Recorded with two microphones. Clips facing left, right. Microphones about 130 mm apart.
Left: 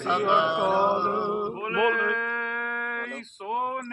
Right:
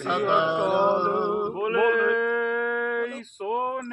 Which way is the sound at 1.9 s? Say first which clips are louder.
Right 6 dB; centre (ahead or behind).